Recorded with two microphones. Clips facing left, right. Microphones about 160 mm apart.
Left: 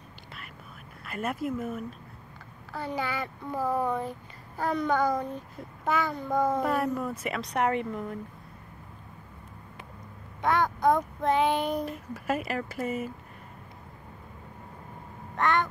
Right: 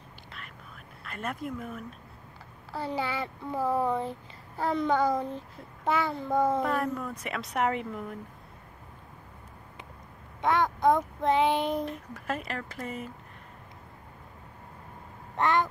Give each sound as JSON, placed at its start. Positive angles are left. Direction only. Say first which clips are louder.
{"t": 1.0, "sound": "speech", "louder": "left 4 dB", "side_deg": 5}
{"t": 2.7, "sound": "a child's voice", "louder": "even", "side_deg": -30}
{"t": 6.6, "sound": "speech", "louder": "left 2 dB", "side_deg": 5}
{"t": 10.4, "sound": "a child's voice", "louder": "even", "side_deg": -25}
{"t": 11.8, "sound": "speech", "louder": "left 1 dB", "side_deg": 5}
{"t": 15.3, "sound": "a sound", "louder": "right 1 dB", "side_deg": -30}